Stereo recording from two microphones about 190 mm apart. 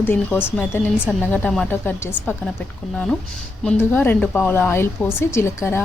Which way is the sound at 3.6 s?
10° left (ahead or behind).